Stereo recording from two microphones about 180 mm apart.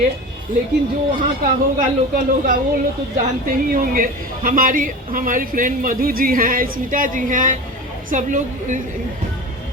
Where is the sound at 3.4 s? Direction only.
50° right (ahead or behind).